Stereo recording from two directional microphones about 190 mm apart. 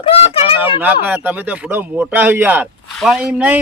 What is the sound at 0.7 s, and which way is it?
A man's voice, 10° right (ahead or behind).